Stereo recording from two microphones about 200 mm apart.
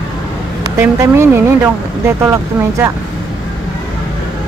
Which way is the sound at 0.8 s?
10° right (ahead or behind).